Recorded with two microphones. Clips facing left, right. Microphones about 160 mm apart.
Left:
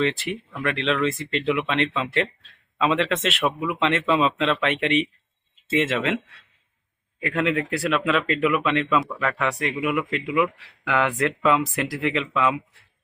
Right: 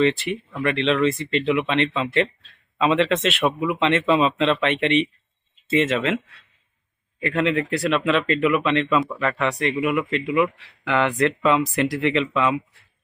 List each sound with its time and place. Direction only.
0.0 s speech: centre (ahead or behind)
7.2 s speech: centre (ahead or behind)